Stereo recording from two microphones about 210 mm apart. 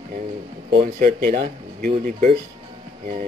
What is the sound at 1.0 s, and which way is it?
Speech, 40° right (ahead or behind).